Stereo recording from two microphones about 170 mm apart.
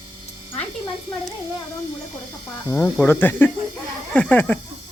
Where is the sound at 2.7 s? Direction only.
10° left (ahead or behind).